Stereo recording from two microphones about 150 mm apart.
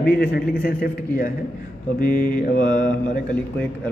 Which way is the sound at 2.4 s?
70° left (ahead or behind).